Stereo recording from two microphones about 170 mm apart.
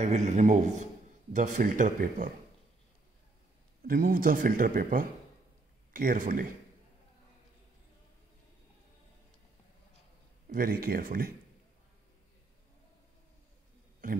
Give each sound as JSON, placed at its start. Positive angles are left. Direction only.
{"t": 0.0, "sound": "speech", "side_deg": -45}
{"t": 3.8, "sound": "speech", "side_deg": -60}
{"t": 10.5, "sound": "speech", "side_deg": -60}